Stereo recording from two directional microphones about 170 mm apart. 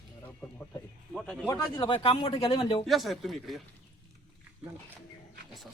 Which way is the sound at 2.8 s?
Centre (ahead or behind).